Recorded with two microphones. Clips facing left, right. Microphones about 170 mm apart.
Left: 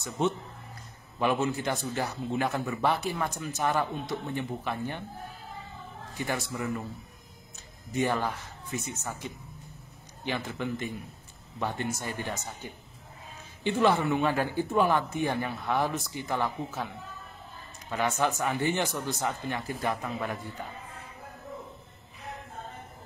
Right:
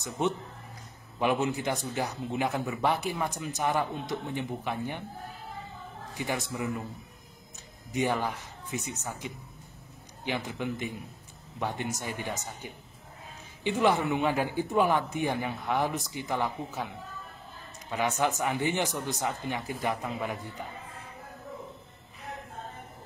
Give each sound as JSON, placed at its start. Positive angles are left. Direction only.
{"t": 0.2, "sound": "speech", "side_deg": -15}
{"t": 6.1, "sound": "speech", "side_deg": -15}
{"t": 7.9, "sound": "speech", "side_deg": -15}
{"t": 17.8, "sound": "speech", "side_deg": -15}